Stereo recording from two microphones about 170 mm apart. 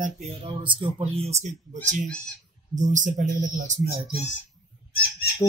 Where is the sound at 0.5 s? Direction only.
30° right (ahead or behind).